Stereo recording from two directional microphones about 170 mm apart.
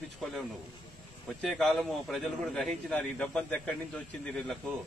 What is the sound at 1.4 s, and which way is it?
A man's voice, centre (ahead or behind).